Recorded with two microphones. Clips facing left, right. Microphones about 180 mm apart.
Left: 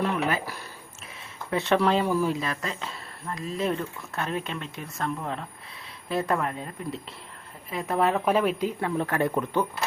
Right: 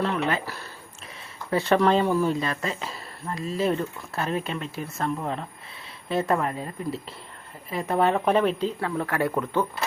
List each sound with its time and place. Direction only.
0.1 s a sound: 10° left (ahead or behind)
1.5 s speech: centre (ahead or behind)
8.8 s speech: 20° left (ahead or behind)